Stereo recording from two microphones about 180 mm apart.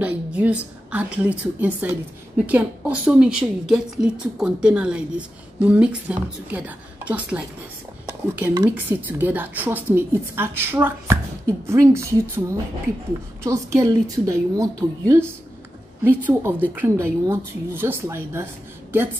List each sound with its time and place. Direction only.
0.0 s a woman's voice: 10° right (ahead or behind)
8.7 s a woman's voice: 10° right (ahead or behind)